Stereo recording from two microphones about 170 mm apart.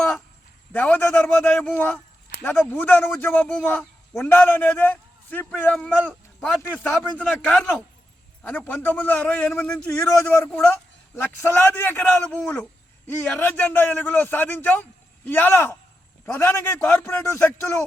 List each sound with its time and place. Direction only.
0.7 s a man's voice: 10° left (ahead or behind)
9.8 s a man's voice: 20° left (ahead or behind)